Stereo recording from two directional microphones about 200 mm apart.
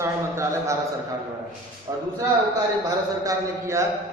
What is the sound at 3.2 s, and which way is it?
Speech, 15° right (ahead or behind).